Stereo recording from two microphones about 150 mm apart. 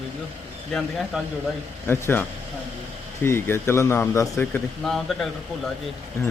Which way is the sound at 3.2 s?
15° left (ahead or behind).